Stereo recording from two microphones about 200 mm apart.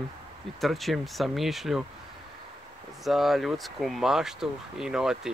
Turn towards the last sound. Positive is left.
turn(degrees=-5)  # may be behind; listen again after turning